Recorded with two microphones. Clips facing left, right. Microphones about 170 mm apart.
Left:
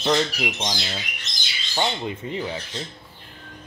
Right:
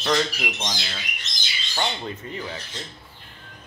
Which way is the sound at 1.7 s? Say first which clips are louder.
Left 3 dB; 20° left (ahead or behind).